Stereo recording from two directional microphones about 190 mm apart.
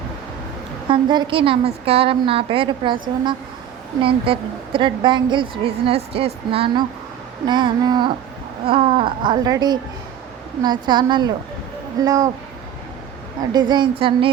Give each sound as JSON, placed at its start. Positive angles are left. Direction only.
{"t": 0.9, "sound": "a woman's voice", "side_deg": -25}
{"t": 4.0, "sound": "a woman's voice", "side_deg": -25}
{"t": 13.5, "sound": "a woman's voice", "side_deg": -20}